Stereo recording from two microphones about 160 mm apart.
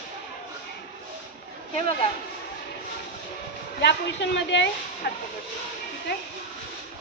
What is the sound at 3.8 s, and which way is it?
A woman's voice, 90° left.